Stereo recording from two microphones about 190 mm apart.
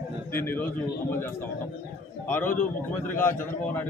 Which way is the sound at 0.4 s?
10° left (ahead or behind).